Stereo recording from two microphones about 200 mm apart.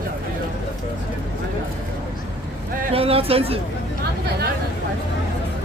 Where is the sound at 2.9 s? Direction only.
30° right (ahead or behind).